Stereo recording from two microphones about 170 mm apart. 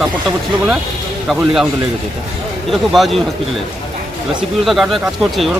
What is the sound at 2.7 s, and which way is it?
Speech, centre (ahead or behind).